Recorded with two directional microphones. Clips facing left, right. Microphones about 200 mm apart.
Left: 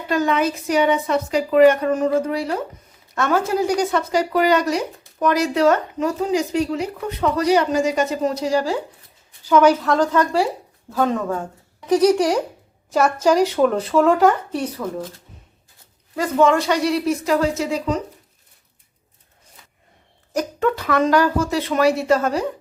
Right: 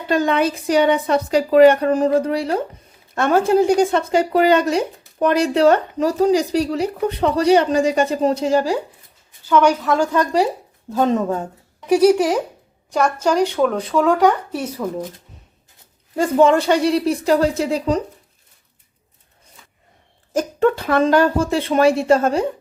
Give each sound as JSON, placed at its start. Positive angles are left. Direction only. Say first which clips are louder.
{"t": 0.1, "sound": "a woman's voice", "louder": "right 2 dB", "side_deg": -30}
{"t": 9.5, "sound": "speech", "louder": "left 1 dB", "side_deg": 5}
{"t": 11.9, "sound": "speech", "louder": "right 2 dB", "side_deg": -10}
{"t": 12.9, "sound": "speech", "louder": "left 1 dB", "side_deg": 5}
{"t": 16.1, "sound": "a woman's voice", "louder": "right 3 dB", "side_deg": -30}
{"t": 20.6, "sound": "speech", "louder": "right 3 dB", "side_deg": -30}